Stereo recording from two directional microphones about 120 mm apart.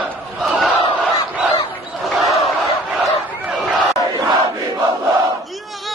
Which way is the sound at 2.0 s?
Centre (ahead or behind).